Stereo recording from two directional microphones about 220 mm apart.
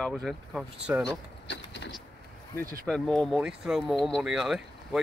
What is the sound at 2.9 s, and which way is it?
Speech, 5° left (ahead or behind).